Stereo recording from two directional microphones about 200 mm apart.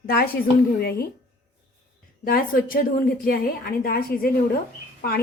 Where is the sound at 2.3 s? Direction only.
45° left (ahead or behind).